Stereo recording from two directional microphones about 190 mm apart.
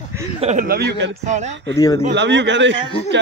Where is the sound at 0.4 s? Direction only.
35° right (ahead or behind).